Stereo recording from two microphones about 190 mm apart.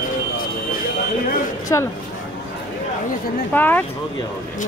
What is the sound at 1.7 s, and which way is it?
Speech, 20° left (ahead or behind).